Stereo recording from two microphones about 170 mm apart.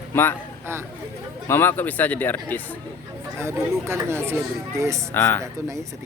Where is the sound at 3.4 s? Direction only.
15° right (ahead or behind).